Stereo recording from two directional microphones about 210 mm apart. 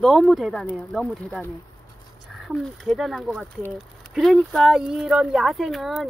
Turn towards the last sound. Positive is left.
turn(degrees=0)  # may be behind; listen again after turning